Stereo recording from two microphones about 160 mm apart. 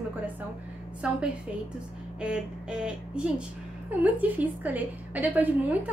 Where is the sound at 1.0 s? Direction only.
5° right (ahead or behind).